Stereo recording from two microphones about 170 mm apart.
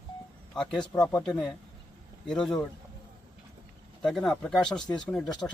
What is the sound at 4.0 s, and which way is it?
Speech, 5° left (ahead or behind).